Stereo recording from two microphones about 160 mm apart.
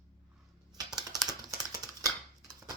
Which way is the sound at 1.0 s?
Centre (ahead or behind).